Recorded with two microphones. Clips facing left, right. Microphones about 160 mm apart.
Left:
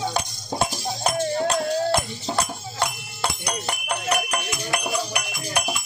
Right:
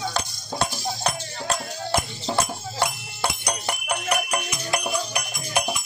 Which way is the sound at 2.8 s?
15° right (ahead or behind).